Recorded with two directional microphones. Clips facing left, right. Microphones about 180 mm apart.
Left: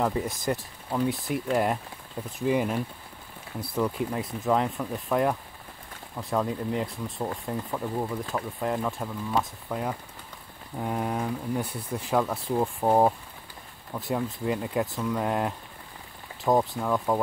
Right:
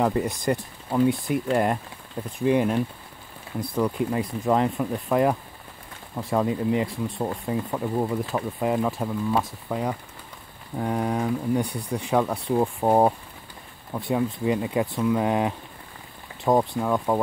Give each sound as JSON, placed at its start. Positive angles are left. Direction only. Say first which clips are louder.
{"t": 0.0, "sound": "speech", "louder": "right 4 dB", "side_deg": 0}
{"t": 3.8, "sound": "speech", "louder": "right 3 dB", "side_deg": 0}
{"t": 8.0, "sound": "speech", "louder": "right 5 dB", "side_deg": -20}
{"t": 8.6, "sound": "speech", "louder": "right 5 dB", "side_deg": -10}
{"t": 12.8, "sound": "speech", "louder": "right 2 dB", "side_deg": -10}
{"t": 13.9, "sound": "speech", "louder": "right 4 dB", "side_deg": 0}